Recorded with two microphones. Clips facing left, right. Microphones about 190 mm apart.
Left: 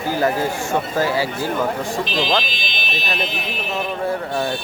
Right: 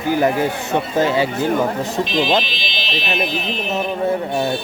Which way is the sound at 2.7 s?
45° left (ahead or behind).